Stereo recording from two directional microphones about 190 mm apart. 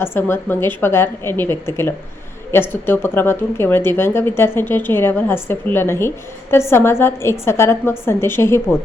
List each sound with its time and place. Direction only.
0.0 s a woman's voice: 10° left (ahead or behind)